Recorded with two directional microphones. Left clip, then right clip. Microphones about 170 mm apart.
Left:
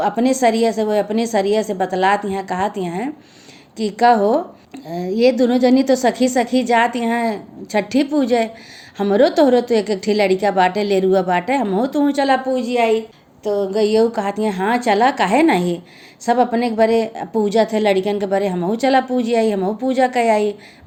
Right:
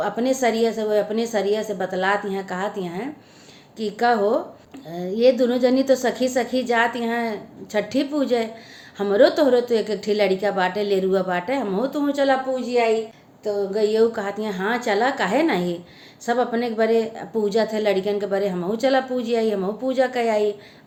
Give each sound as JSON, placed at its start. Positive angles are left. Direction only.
{"t": 0.0, "sound": "a woman's voice", "side_deg": 35}